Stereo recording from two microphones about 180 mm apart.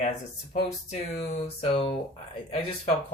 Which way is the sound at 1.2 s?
35° left (ahead or behind).